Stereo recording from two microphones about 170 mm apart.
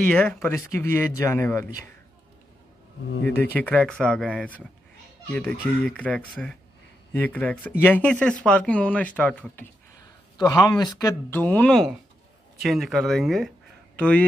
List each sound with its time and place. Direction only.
0.1 s speech: 10° left (ahead or behind)
3.5 s speech: 10° left (ahead or behind)
10.3 s a man's voice: 20° left (ahead or behind)